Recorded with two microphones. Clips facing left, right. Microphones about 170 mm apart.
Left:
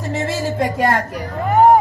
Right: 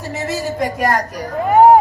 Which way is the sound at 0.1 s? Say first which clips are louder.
Left 1 dB; 30° left (ahead or behind).